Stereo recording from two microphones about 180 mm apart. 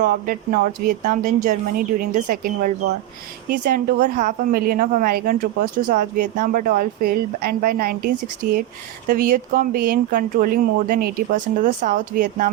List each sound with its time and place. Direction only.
0.0 s a woman's voice: 50° right (ahead or behind)
3.6 s a woman's voice: 55° right (ahead or behind)